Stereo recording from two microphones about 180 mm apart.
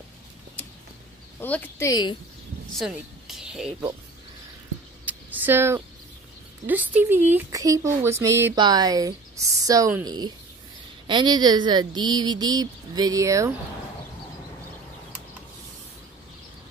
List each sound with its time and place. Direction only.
1.4 s speech: 10° left (ahead or behind)
2.7 s speech: centre (ahead or behind)
5.0 s a sound: 10° right (ahead or behind)
6.6 s speech: 10° right (ahead or behind)